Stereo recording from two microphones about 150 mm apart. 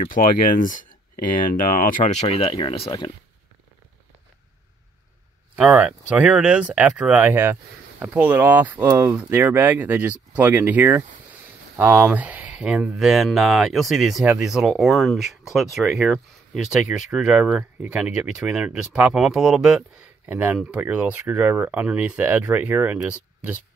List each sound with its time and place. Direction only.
0.0 s speech: 65° left (ahead or behind); by 3.1 s 35° left (ahead or behind)
5.6 s speech: 10° right (ahead or behind)